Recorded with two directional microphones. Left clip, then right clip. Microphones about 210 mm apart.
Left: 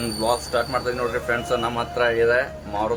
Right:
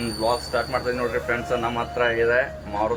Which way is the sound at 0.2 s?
15° left (ahead or behind).